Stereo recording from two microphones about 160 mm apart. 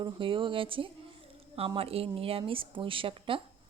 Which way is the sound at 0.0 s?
30° right (ahead or behind).